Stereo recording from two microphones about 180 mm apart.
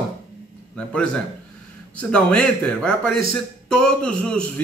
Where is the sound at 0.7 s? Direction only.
5° left (ahead or behind).